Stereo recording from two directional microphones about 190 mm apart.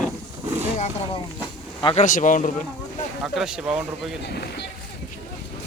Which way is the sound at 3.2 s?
5° right (ahead or behind).